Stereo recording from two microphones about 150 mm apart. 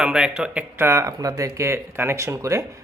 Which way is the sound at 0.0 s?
5° right (ahead or behind).